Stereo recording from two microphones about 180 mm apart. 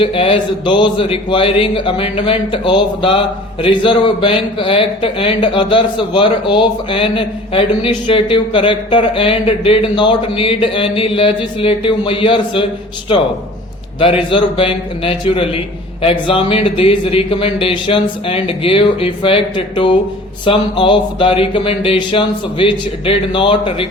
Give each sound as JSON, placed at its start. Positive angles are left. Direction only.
{"t": 0.0, "sound": "speech", "side_deg": 30}
{"t": 14.0, "sound": "speech", "side_deg": 30}